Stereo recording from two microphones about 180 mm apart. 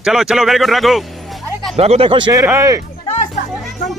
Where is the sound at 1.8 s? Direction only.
35° right (ahead or behind).